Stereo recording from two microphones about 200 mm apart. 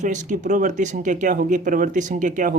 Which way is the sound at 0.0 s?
35° right (ahead or behind).